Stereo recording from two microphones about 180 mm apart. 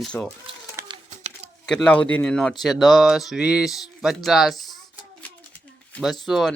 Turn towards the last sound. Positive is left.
turn(degrees=0)  # may be behind; listen again after turning